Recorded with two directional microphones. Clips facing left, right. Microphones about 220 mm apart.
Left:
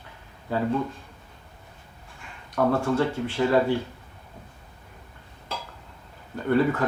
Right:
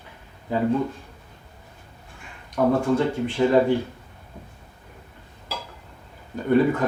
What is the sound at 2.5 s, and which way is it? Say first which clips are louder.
Speech: right 3 dB; 15° right (ahead or behind).